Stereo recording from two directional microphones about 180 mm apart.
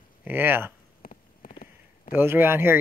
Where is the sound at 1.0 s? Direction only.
50° left (ahead or behind).